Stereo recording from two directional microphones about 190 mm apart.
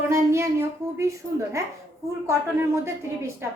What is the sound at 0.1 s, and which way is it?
Speech, 15° right (ahead or behind).